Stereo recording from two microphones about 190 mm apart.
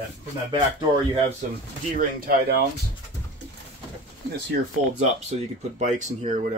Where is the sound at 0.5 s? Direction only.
25° right (ahead or behind).